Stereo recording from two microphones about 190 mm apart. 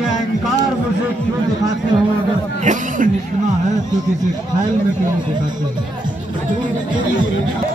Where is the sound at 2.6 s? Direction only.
40° right (ahead or behind).